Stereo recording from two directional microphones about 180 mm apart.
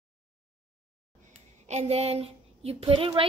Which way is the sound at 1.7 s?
35° right (ahead or behind).